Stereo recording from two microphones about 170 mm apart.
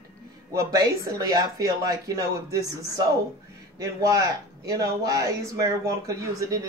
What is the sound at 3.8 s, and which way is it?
Speech, 20° right (ahead or behind).